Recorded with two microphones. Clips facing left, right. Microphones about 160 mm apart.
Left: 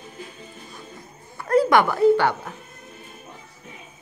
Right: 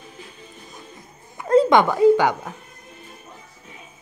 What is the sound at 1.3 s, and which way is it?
Dog, 20° right (ahead or behind).